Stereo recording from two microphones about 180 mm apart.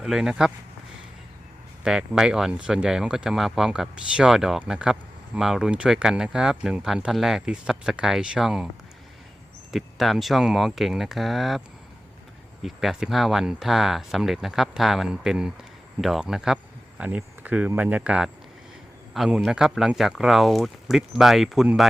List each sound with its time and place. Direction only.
0.0 s speech: 5° right (ahead or behind)
1.8 s speech: 5° right (ahead or behind)
9.7 s speech: centre (ahead or behind)
12.6 s speech: centre (ahead or behind)